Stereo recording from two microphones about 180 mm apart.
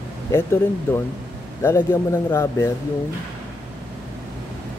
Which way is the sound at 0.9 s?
10° left (ahead or behind).